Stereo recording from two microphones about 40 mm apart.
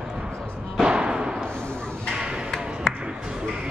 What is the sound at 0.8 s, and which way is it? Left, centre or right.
Thump, right.